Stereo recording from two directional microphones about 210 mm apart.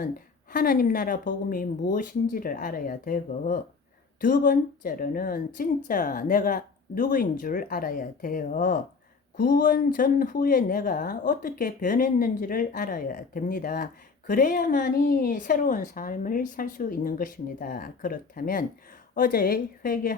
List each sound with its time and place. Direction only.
0.5 s speech: 45° left (ahead or behind)